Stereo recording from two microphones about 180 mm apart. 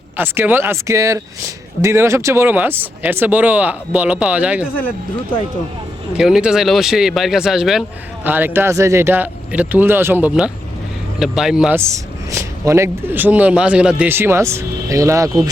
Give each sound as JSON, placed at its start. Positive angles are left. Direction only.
{"t": 0.2, "sound": "speech", "side_deg": -10}
{"t": 6.1, "sound": "speech", "side_deg": -5}
{"t": 11.8, "sound": "speech", "side_deg": -15}